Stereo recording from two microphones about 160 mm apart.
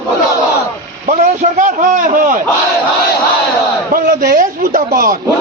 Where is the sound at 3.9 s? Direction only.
70° right (ahead or behind).